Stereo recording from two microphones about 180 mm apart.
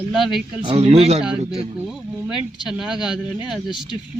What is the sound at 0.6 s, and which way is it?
Speech, 30° right (ahead or behind).